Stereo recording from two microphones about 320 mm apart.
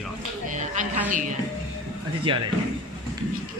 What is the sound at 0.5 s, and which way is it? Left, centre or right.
Speech, right.